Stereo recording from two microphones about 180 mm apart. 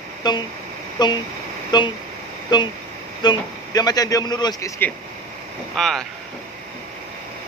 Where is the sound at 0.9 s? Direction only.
25° left (ahead or behind).